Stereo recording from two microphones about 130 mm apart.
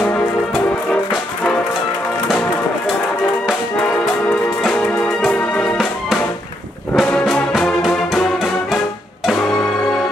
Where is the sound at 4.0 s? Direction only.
5° left (ahead or behind).